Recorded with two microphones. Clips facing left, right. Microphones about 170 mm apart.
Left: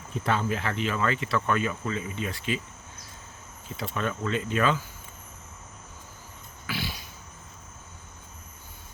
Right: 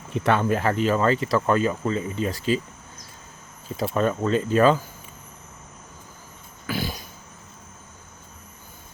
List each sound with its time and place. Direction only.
0.1 s speech: 65° right (ahead or behind); by 2.6 s 35° right (ahead or behind)
3.9 s speech: 40° right (ahead or behind)
6.7 s a sound: 45° right (ahead or behind)